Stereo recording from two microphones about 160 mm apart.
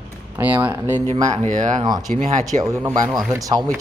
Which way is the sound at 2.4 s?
20° right (ahead or behind).